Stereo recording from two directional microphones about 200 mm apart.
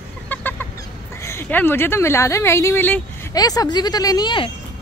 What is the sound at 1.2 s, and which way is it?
A woman's voice, 10° left (ahead or behind).